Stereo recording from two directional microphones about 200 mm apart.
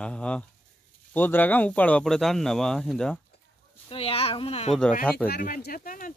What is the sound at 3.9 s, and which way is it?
Speech, 30° left (ahead or behind).